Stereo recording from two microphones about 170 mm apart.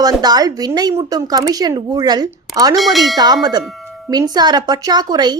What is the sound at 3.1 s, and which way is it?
A woman's voice, 25° right (ahead or behind).